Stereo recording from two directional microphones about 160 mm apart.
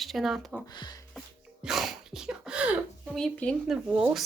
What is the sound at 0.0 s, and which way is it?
Speech, centre (ahead or behind).